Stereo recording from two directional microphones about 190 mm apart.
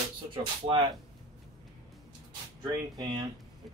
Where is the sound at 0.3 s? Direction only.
25° right (ahead or behind).